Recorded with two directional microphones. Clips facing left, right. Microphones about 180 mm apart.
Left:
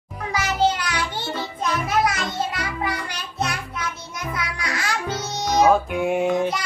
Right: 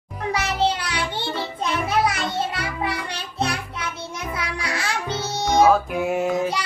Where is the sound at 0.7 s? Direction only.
30° right (ahead or behind).